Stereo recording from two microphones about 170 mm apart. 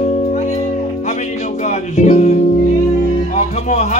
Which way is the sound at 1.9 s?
45° left (ahead or behind).